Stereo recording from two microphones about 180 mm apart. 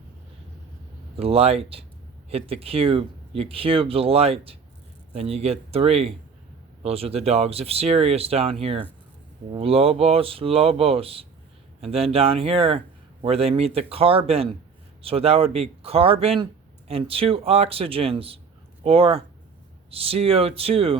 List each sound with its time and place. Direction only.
1.1 s speech: 35° right (ahead or behind)